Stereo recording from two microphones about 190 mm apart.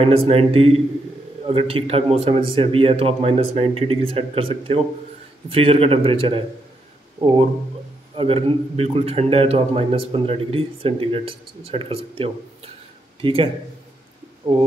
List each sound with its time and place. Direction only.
0.0 s a man's voice: 30° right (ahead or behind)